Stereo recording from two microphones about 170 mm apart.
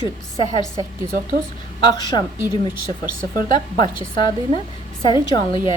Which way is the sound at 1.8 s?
25° left (ahead or behind).